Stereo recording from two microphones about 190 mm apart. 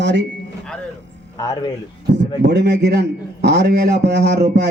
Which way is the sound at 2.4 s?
65° right (ahead or behind).